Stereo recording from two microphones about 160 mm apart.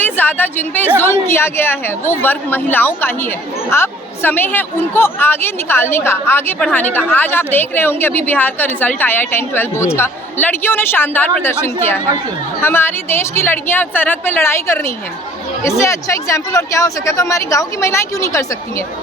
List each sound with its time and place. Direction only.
0.0 s a woman's voice: 10° left (ahead or behind)